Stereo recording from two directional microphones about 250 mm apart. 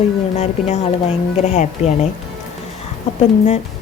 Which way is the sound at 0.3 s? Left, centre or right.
Left.